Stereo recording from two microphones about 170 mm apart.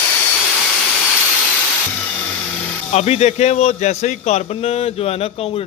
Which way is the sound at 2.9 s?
40° left (ahead or behind).